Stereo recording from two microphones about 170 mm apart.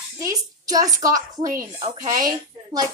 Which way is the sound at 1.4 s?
55° right (ahead or behind).